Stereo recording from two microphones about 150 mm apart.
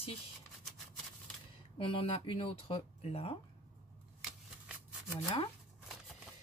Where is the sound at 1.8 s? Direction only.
35° left (ahead or behind).